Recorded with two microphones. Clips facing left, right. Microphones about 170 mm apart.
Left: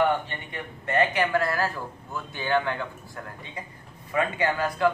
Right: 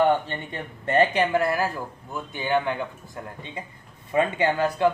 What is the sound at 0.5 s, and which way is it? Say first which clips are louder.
A man's voice: right 3 dB; 25° right (ahead or behind).